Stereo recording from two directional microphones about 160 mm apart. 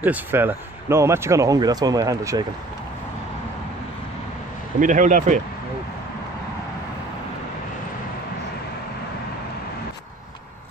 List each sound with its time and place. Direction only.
0.0 s speech: 10° right (ahead or behind)
4.7 s speech: 55° right (ahead or behind)